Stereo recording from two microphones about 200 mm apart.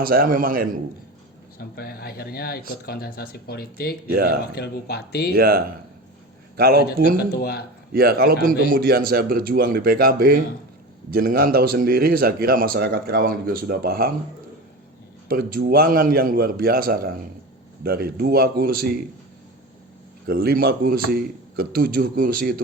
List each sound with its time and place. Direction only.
0.0 s speech: 45° right (ahead or behind)
1.5 s speech: 50° left (ahead or behind)
4.1 s speech: 50° right (ahead or behind)
4.5 s speech: 55° left (ahead or behind)
5.3 s speech: 50° right (ahead or behind)
7.2 s speech: 50° left (ahead or behind)
7.9 s speech: 50° right (ahead or behind)
15.3 s speech: 45° right (ahead or behind)
20.2 s speech: 50° right (ahead or behind)